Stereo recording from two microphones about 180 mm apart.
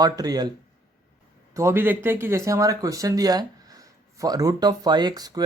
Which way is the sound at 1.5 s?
15° right (ahead or behind).